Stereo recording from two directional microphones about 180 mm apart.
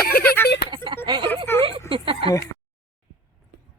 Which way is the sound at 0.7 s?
25° right (ahead or behind).